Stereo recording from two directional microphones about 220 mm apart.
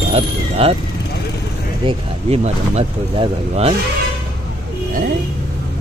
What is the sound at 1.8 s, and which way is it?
Speech, 30° right (ahead or behind).